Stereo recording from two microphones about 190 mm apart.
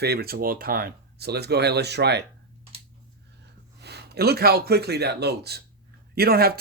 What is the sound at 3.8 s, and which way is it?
Speech, 60° right (ahead or behind).